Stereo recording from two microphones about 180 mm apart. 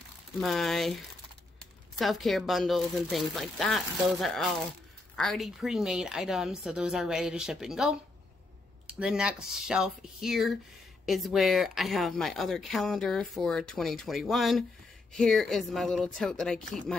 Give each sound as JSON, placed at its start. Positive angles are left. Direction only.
{"t": 0.4, "sound": "a woman's voice", "side_deg": 0}
{"t": 2.0, "sound": "a woman's voice", "side_deg": 0}